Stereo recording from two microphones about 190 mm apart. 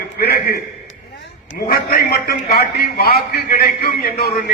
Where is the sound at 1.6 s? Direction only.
50° left (ahead or behind).